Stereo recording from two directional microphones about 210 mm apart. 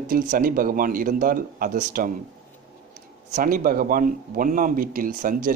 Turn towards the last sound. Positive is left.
turn(degrees=-40)  # may be behind; listen again after turning